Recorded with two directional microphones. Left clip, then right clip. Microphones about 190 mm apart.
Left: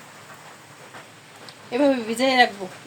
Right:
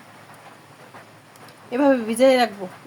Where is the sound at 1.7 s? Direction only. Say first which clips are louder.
Right 2 dB; 40° right (ahead or behind).